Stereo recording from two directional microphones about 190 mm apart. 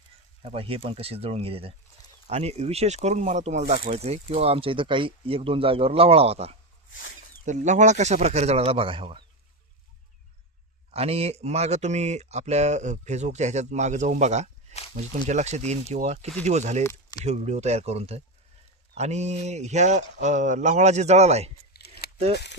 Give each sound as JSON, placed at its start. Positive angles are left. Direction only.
{"t": 0.4, "sound": "speech", "side_deg": -30}
{"t": 10.9, "sound": "speech", "side_deg": -30}
{"t": 21.8, "sound": "a sound", "side_deg": 55}